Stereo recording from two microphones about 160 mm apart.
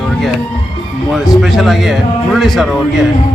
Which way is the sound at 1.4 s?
Centre (ahead or behind).